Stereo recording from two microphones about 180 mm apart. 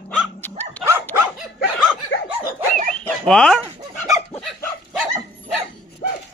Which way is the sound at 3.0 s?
5° left (ahead or behind).